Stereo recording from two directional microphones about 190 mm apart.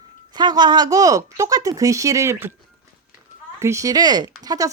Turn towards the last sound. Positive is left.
turn(degrees=-20)  # may be behind; listen again after turning